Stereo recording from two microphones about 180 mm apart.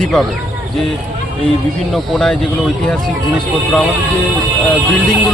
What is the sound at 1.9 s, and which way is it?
Speech, centre (ahead or behind).